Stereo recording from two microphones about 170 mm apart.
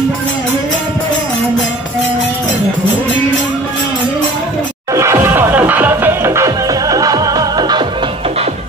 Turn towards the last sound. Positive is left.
turn(degrees=-25)  # may be behind; listen again after turning